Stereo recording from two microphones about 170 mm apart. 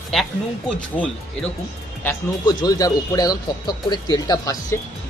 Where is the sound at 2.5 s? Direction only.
20° left (ahead or behind).